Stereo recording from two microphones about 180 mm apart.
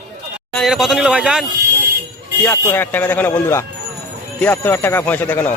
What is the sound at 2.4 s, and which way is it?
Speech, 10° left (ahead or behind).